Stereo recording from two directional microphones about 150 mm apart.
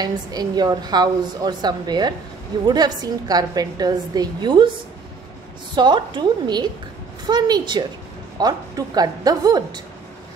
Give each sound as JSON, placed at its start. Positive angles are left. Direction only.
{"t": 0.0, "sound": "a woman's voice", "side_deg": -25}
{"t": 5.8, "sound": "a woman's voice", "side_deg": -30}